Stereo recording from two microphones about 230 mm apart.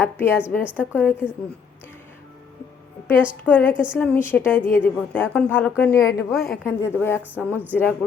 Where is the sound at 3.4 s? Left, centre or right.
Centre.